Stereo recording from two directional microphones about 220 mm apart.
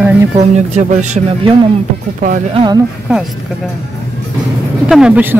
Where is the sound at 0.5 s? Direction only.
30° right (ahead or behind).